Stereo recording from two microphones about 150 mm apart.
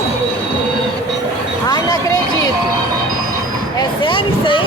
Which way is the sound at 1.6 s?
25° left (ahead or behind).